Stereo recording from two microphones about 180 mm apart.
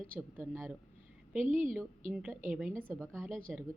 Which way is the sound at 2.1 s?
5° right (ahead or behind).